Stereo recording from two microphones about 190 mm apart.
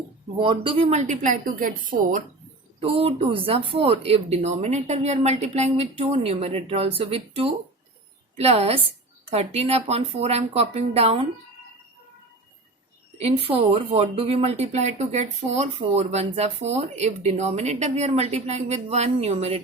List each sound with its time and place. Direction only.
0.3 s speech: 25° right (ahead or behind); by 2.2 s 45° right (ahead or behind)
2.8 s speech: 30° right (ahead or behind)
13.1 s speech: 30° right (ahead or behind)